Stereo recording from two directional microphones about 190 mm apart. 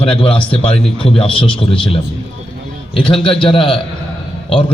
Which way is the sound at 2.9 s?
25° left (ahead or behind).